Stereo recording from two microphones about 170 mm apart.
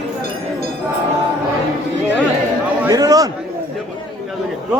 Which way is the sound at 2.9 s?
20° right (ahead or behind).